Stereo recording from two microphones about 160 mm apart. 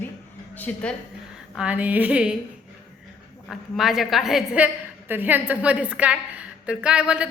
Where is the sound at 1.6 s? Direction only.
10° right (ahead or behind).